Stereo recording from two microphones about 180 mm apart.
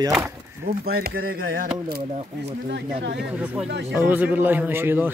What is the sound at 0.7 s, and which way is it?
Speech, 55° right (ahead or behind).